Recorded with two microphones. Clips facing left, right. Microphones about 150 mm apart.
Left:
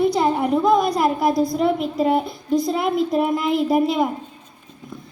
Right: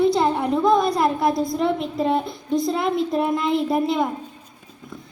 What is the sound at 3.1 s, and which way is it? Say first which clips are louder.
Speech: left 2 dB; 5° left (ahead or behind).